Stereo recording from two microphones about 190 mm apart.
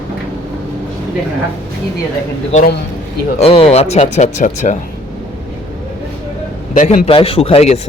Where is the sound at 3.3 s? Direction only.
30° left (ahead or behind).